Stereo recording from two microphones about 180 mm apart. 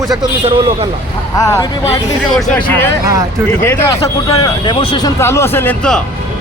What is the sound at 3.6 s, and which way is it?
A man's voice, 15° left (ahead or behind).